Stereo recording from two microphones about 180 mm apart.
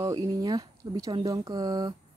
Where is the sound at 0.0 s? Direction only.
20° right (ahead or behind).